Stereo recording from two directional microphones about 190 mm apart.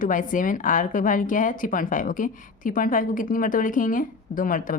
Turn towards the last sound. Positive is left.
turn(degrees=45)  # may be behind; listen again after turning